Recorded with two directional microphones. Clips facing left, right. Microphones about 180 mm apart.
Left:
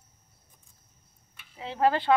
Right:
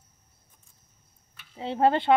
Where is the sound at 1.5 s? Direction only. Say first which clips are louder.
Right 2 dB; 30° right (ahead or behind).